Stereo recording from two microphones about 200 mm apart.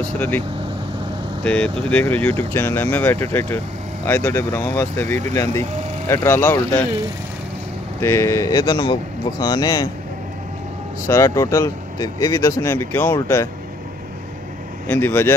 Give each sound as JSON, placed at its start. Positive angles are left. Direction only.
{"t": 1.4, "sound": "speech", "side_deg": 5}
{"t": 8.0, "sound": "speech", "side_deg": 15}
{"t": 11.1, "sound": "speech", "side_deg": 15}
{"t": 14.9, "sound": "speech", "side_deg": 10}